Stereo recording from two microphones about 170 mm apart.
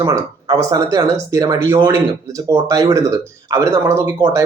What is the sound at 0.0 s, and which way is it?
A man's voice, 20° right (ahead or behind).